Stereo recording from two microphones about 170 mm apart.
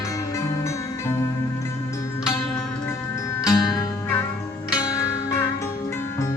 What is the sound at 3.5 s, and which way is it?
Music, 20° left (ahead or behind).